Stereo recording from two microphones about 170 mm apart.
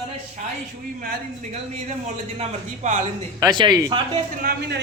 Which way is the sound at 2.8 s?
45° right (ahead or behind).